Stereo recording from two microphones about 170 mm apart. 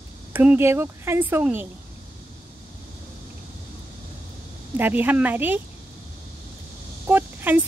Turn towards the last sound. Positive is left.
turn(degrees=-10)  # may be behind; listen again after turning